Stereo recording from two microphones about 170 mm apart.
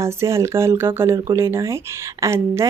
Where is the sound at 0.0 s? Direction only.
15° right (ahead or behind).